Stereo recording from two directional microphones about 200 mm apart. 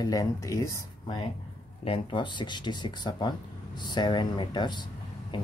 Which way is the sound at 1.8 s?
25° left (ahead or behind).